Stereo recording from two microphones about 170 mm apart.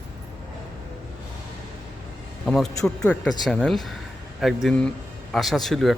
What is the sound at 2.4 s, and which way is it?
Speech, 5° left (ahead or behind).